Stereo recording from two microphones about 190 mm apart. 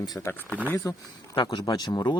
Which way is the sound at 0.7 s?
15° left (ahead or behind).